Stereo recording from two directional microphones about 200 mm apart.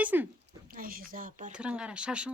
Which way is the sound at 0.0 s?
10° right (ahead or behind).